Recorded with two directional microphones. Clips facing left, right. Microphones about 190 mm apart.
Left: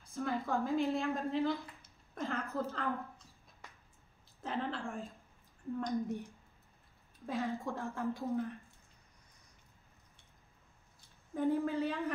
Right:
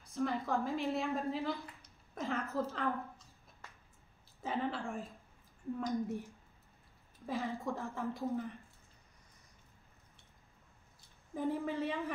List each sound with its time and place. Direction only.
0.0 s a woman's voice: centre (ahead or behind)
4.4 s a woman's voice: 5° right (ahead or behind)
11.3 s a woman's voice: centre (ahead or behind)